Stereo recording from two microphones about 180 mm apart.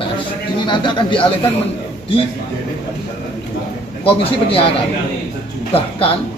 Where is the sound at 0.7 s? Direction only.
25° left (ahead or behind).